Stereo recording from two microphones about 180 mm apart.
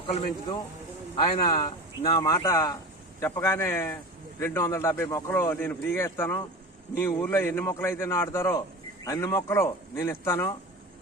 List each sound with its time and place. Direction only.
1.1 s speech: 20° left (ahead or behind)